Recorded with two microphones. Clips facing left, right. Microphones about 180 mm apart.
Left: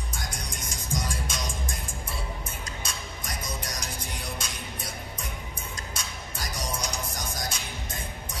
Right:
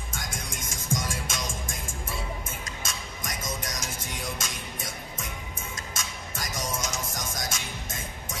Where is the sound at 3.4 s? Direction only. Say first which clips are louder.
Right 2 dB; 45° right (ahead or behind).